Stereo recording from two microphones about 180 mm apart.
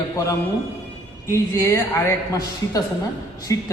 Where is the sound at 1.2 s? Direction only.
15° left (ahead or behind).